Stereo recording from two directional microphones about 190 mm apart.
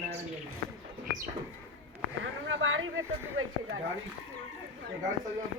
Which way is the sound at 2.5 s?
90° right.